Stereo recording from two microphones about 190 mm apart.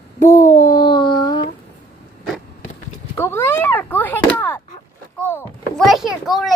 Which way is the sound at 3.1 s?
10° left (ahead or behind).